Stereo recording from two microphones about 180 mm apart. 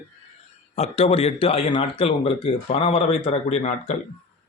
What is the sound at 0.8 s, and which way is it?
Speech, 35° left (ahead or behind).